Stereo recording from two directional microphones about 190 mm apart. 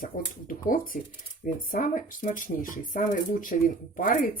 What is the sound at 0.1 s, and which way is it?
Speech, 45° left (ahead or behind).